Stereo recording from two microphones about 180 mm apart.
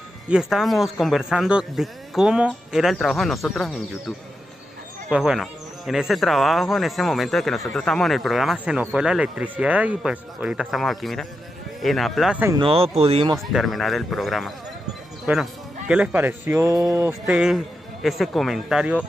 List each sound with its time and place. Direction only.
0.3 s speech: 5° right (ahead or behind)
5.1 s speech: 5° right (ahead or behind)
12.4 s speech: 25° right (ahead or behind)
13.5 s speech: centre (ahead or behind)
15.3 s speech: 10° right (ahead or behind)
17.3 s speech: centre (ahead or behind)